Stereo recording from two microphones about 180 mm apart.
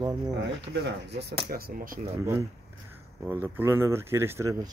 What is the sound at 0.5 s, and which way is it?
Speech, 65° right (ahead or behind).